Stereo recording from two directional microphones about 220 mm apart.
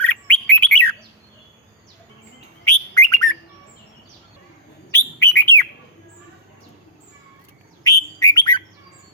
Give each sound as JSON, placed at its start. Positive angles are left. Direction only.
{"t": 0.0, "sound": "bird", "side_deg": 5}
{"t": 2.9, "sound": "bird", "side_deg": 15}
{"t": 4.9, "sound": "bird", "side_deg": 10}
{"t": 7.9, "sound": "bird", "side_deg": 15}